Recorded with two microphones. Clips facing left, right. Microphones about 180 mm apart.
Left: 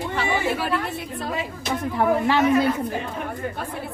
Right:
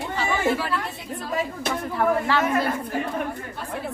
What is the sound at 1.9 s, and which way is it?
Speech, 20° left (ahead or behind).